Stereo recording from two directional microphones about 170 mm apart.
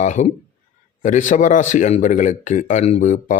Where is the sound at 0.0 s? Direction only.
45° left (ahead or behind).